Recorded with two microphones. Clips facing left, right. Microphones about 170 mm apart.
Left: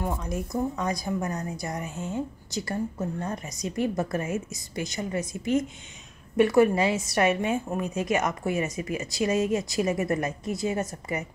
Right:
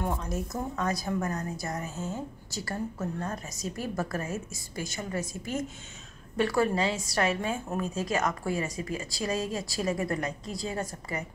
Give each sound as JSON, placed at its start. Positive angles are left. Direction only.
{"t": 0.0, "sound": "a woman's voice", "side_deg": 10}
{"t": 6.3, "sound": "a woman's voice", "side_deg": 20}